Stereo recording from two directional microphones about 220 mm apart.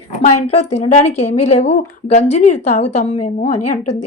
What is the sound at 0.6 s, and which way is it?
A woman's voice, 30° left (ahead or behind).